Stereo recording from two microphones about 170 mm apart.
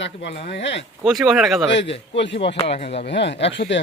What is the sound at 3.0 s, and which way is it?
Speech, 90° left.